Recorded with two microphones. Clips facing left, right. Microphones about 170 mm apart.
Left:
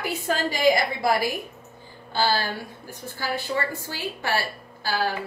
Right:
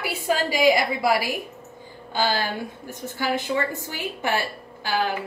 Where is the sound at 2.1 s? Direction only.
15° right (ahead or behind).